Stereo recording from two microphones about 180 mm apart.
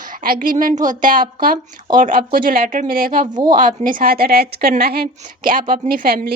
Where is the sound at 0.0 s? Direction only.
50° right (ahead or behind).